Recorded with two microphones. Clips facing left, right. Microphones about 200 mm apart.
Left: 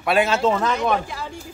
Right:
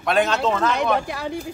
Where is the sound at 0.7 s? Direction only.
65° right (ahead or behind).